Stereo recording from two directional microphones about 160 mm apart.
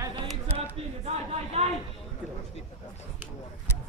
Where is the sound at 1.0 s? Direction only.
40° right (ahead or behind).